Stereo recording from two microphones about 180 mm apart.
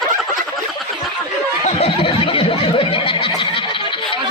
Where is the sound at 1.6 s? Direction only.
30° left (ahead or behind).